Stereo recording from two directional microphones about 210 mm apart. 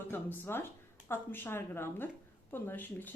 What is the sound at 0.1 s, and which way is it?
Speech, 10° left (ahead or behind).